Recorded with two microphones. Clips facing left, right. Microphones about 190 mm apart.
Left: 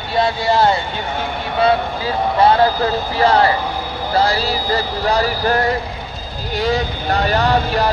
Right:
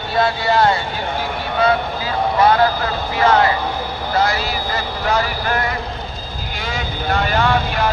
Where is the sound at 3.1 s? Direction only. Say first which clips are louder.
Even; 35° left (ahead or behind).